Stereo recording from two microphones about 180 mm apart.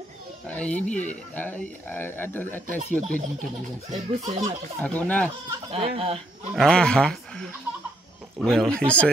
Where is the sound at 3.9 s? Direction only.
40° right (ahead or behind).